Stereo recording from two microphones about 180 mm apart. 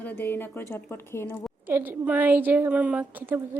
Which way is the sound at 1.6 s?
10° right (ahead or behind).